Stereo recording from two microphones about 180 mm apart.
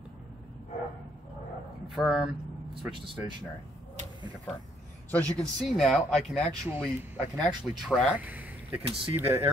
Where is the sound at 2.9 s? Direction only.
25° right (ahead or behind).